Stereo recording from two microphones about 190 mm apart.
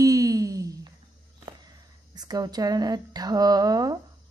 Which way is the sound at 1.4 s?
20° right (ahead or behind).